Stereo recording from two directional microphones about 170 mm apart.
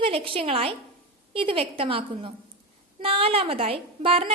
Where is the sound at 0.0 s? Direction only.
35° right (ahead or behind).